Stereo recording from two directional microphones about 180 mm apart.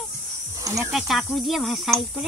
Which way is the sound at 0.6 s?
15° right (ahead or behind).